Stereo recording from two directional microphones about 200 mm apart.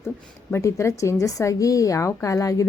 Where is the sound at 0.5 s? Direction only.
15° left (ahead or behind).